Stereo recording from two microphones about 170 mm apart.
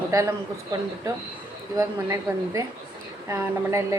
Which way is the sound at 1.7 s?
20° right (ahead or behind).